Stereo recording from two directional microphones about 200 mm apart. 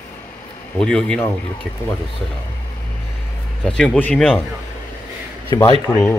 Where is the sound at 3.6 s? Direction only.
5° left (ahead or behind).